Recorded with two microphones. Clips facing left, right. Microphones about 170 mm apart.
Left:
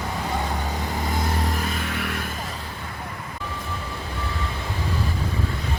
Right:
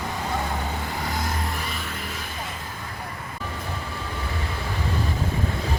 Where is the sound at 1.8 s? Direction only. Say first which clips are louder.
Left 5 dB; 70° left (ahead or behind).